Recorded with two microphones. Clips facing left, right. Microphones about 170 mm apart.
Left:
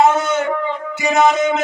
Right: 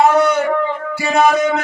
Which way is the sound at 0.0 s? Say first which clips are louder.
Right 2 dB; 20° left (ahead or behind).